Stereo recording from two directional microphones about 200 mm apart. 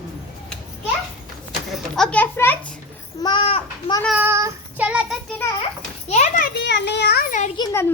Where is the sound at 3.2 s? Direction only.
25° left (ahead or behind).